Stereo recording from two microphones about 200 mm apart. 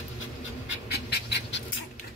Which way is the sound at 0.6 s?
60° left (ahead or behind).